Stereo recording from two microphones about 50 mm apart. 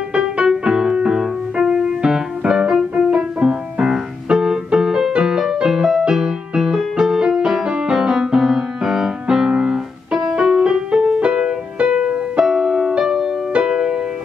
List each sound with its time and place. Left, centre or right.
0.1 s music: right
3.1 s piano: centre
4.7 s music: centre